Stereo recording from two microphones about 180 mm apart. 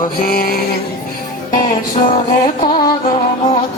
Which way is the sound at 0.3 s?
55° left (ahead or behind).